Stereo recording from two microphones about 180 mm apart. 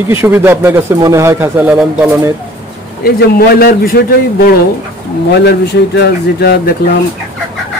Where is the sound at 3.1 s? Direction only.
60° left (ahead or behind).